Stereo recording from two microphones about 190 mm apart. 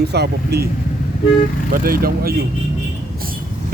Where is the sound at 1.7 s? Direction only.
50° right (ahead or behind).